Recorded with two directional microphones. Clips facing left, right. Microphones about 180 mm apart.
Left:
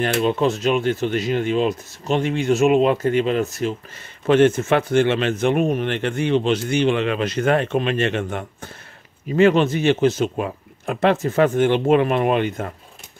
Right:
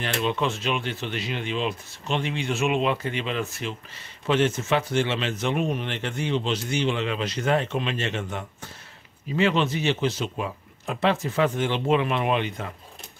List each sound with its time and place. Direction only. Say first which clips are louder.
0.0 s speech: left 7 dB; 40° left (ahead or behind)
4.3 s speech: left 7 dB; 55° left (ahead or behind)